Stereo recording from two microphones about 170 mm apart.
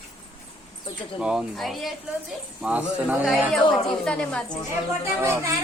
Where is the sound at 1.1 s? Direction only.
5° right (ahead or behind).